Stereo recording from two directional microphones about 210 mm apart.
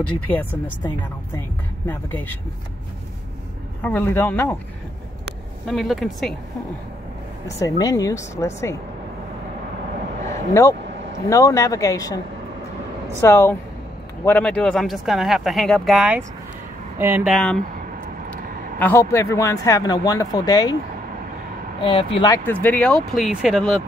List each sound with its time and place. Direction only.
0.0 s speech: 10° left (ahead or behind)
1.9 s speech: 10° left (ahead or behind)
3.8 s speech: 10° left (ahead or behind)
5.7 s speech: centre (ahead or behind)
7.4 s speech: 15° left (ahead or behind)
10.3 s speech: 15° left (ahead or behind)
10.8 s vehicle: 55° right (ahead or behind)
11.2 s speech: 15° left (ahead or behind)
13.2 s speech: 10° left (ahead or behind); by 17.3 s 10° right (ahead or behind)
17.3 s speech: centre (ahead or behind)
18.8 s speech: 10° left (ahead or behind)
21.8 s speech: 25° left (ahead or behind)
22.5 s speech: 10° left (ahead or behind)